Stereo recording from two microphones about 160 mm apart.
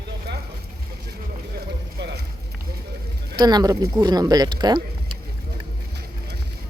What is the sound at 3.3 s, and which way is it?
Speech, 25° right (ahead or behind).